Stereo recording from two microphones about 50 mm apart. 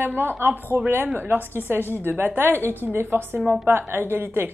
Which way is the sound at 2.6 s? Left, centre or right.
Left.